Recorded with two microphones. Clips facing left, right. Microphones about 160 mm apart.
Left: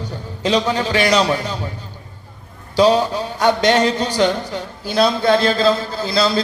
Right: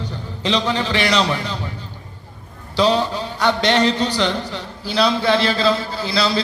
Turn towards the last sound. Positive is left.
turn(degrees=45)  # may be behind; listen again after turning